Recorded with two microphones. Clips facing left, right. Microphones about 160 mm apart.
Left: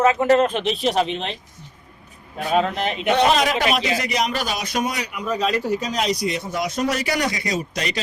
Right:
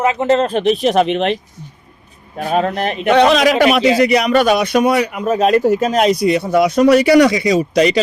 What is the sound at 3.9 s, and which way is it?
Speech, 65° right (ahead or behind).